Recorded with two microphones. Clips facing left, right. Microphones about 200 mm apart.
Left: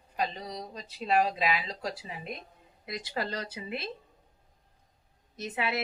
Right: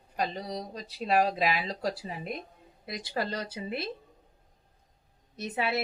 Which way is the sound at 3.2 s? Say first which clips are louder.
Right 2 dB; 30° right (ahead or behind).